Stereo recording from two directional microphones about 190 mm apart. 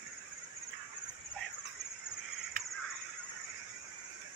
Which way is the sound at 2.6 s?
55° right (ahead or behind).